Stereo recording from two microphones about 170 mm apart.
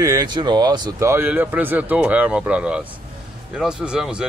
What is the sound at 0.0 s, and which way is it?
A man's voice, 20° right (ahead or behind).